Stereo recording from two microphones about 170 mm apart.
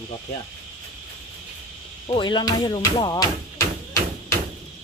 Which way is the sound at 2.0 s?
30° left (ahead or behind).